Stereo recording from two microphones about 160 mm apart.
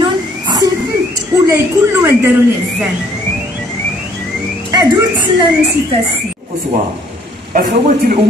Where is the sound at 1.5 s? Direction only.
15° right (ahead or behind).